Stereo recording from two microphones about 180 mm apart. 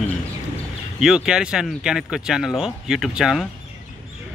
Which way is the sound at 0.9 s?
5° right (ahead or behind).